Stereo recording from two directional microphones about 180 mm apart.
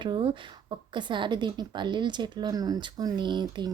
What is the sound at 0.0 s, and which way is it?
A woman's voice, 30° right (ahead or behind).